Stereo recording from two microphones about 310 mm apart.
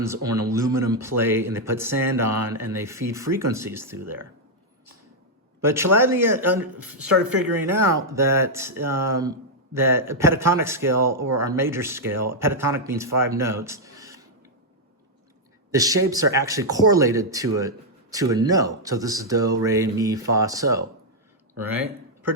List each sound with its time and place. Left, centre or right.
0.0 s speech: centre
5.6 s speech: centre
15.7 s speech: centre